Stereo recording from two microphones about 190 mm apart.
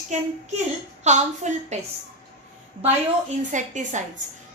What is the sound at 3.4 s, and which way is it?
Speech, 40° right (ahead or behind).